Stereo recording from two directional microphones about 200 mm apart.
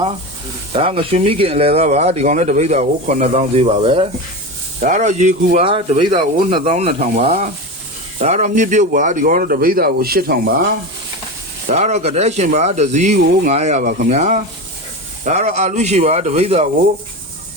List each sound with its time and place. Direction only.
0.7 s speech: 30° right (ahead or behind)
5.6 s speech: 25° right (ahead or behind); by 10.4 s 50° right (ahead or behind)
11.7 s speech: 35° right (ahead or behind)